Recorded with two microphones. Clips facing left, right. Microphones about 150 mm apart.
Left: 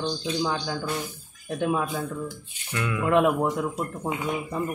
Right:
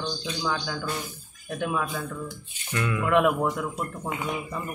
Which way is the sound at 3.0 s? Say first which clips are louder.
Left 1 dB; 25° left (ahead or behind).